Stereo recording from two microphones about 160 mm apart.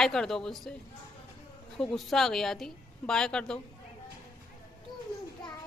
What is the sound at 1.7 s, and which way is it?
Speech, centre (ahead or behind).